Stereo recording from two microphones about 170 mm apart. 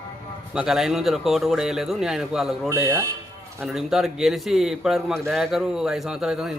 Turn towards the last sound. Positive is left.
turn(degrees=-5)  # may be behind; listen again after turning